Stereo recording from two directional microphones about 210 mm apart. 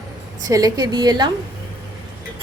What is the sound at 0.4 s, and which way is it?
Speech, 15° right (ahead or behind).